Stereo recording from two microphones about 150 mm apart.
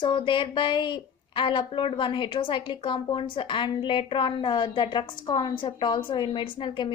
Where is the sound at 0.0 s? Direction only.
35° left (ahead or behind).